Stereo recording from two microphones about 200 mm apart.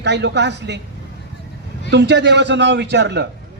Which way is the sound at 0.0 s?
60° right (ahead or behind).